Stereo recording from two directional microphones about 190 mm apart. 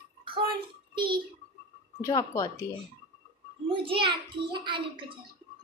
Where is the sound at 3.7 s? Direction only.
25° right (ahead or behind).